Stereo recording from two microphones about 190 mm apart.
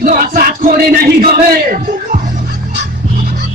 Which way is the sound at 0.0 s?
45° right (ahead or behind).